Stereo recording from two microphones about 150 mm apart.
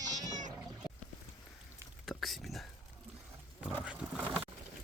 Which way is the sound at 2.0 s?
Centre (ahead or behind).